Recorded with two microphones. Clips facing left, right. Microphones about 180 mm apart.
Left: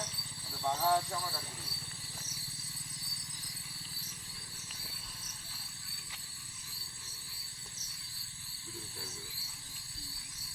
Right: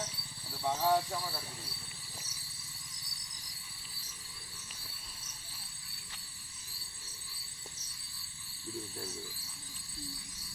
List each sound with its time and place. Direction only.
0.5 s speech: 5° right (ahead or behind)